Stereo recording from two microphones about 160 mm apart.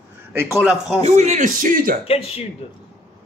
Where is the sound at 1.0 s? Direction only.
45° right (ahead or behind).